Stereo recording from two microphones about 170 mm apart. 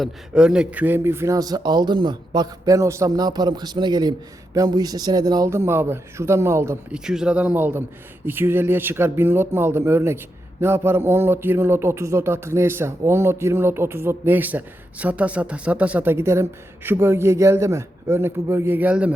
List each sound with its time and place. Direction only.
0.0 s speech: 5° right (ahead or behind)
6.9 s speech: 5° right (ahead or behind)